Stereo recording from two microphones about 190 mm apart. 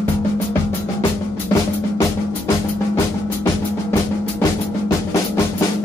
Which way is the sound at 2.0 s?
15° left (ahead or behind).